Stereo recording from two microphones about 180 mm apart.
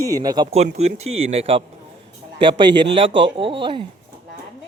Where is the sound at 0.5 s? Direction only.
35° right (ahead or behind).